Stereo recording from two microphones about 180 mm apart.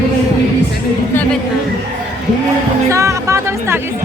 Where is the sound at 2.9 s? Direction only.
15° right (ahead or behind).